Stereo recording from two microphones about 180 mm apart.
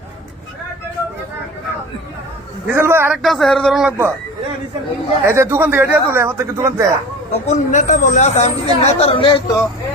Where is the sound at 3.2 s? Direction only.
Centre (ahead or behind).